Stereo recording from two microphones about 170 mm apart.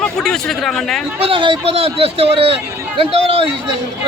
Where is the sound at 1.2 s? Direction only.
30° right (ahead or behind).